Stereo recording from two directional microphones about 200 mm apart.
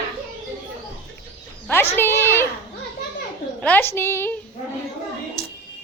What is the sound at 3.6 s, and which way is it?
Speech, 10° left (ahead or behind).